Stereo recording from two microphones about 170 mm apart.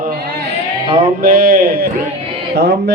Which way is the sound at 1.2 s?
60° right (ahead or behind).